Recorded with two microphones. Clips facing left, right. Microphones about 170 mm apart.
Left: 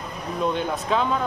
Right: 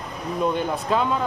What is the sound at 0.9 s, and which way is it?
Speech, 5° right (ahead or behind).